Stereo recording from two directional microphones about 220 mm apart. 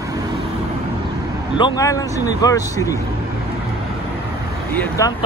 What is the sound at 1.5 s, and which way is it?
Speech, 20° left (ahead or behind).